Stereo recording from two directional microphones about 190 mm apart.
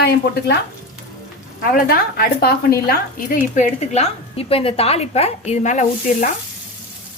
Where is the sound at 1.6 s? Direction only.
50° left (ahead or behind).